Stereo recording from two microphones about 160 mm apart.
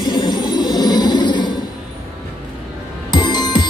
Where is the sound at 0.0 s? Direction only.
25° left (ahead or behind).